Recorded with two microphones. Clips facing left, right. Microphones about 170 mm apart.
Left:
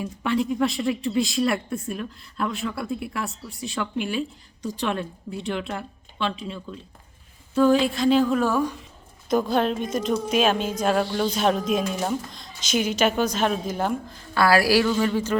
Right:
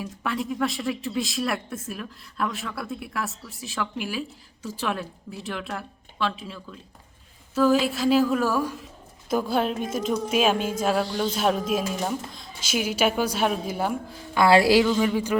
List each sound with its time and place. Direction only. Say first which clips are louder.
0.0 s a woman's voice: left 5 dB; centre (ahead or behind)
14.4 s a woman's voice: right 2 dB; 20° right (ahead or behind)
14.8 s a man's voice: even; 10° right (ahead or behind)